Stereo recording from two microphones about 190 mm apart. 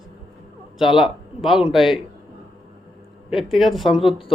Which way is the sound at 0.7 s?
Centre (ahead or behind).